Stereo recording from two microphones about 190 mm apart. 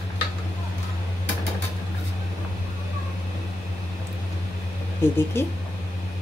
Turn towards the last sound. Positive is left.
turn(degrees=10)  # may be behind; listen again after turning